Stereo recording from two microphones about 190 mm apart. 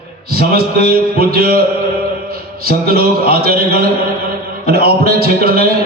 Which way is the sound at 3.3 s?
50° right (ahead or behind).